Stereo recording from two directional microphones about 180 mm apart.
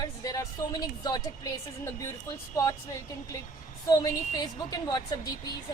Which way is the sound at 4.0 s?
20° left (ahead or behind).